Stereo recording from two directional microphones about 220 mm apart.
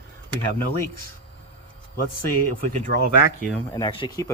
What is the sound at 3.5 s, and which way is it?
Speech, 20° left (ahead or behind).